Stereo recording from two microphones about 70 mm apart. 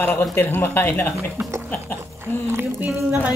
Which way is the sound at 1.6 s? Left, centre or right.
Left.